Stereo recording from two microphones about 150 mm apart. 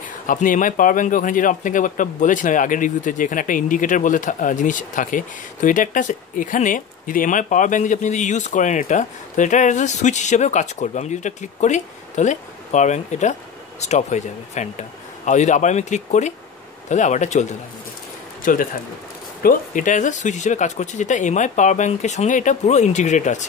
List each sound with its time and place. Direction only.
0.3 s a man's voice: 60° left (ahead or behind)
18.4 s speech: 65° left (ahead or behind)